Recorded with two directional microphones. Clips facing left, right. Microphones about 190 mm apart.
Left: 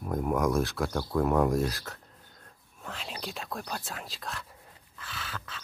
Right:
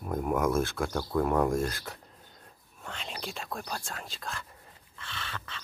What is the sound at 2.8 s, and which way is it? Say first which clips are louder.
Speech: even; 5° left (ahead or behind).